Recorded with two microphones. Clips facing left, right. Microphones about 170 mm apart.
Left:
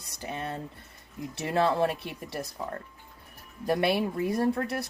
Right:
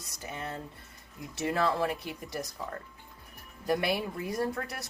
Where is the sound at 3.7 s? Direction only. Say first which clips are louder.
Left 4 dB; 25° left (ahead or behind).